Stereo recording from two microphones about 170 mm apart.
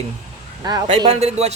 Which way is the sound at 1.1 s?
40° right (ahead or behind).